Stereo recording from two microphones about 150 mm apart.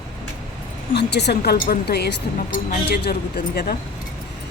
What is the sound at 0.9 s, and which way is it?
Speech, 90° left.